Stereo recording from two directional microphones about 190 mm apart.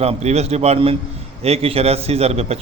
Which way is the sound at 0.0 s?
35° right (ahead or behind).